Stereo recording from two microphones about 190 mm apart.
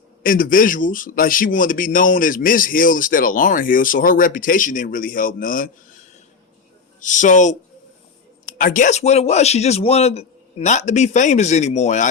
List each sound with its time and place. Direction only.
0.2 s a man's voice: 45° left (ahead or behind)
8.5 s a man's voice: 45° left (ahead or behind)